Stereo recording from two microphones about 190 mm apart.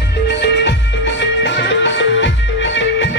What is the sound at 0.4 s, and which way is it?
Music, 65° left (ahead or behind).